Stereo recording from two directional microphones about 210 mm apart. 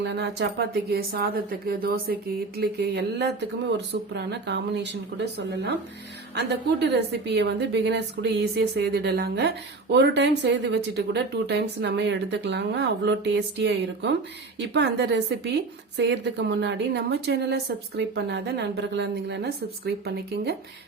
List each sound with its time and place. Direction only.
0.0 s a woman's voice: 55° right (ahead or behind)